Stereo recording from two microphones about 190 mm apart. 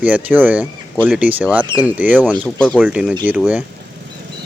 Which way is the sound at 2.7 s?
5° right (ahead or behind).